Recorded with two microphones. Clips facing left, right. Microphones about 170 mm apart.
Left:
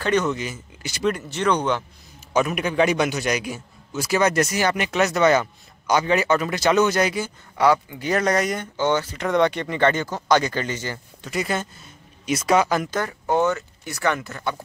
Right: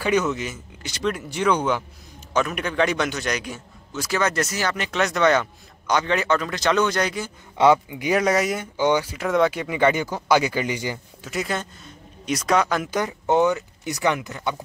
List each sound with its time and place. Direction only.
0.0 s speech: 5° right (ahead or behind)
1.3 s speech: 5° right (ahead or behind)
2.3 s a man's voice: 10° left (ahead or behind)
7.5 s speech: 20° right (ahead or behind)
11.2 s speech: centre (ahead or behind)
12.9 s speech: 15° right (ahead or behind)